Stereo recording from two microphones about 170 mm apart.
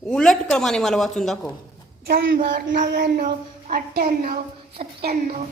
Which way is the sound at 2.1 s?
65° right (ahead or behind).